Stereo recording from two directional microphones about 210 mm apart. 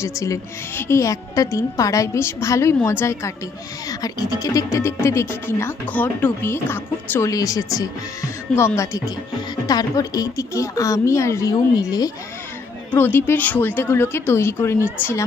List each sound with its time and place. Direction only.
0.2 s speech: 15° left (ahead or behind)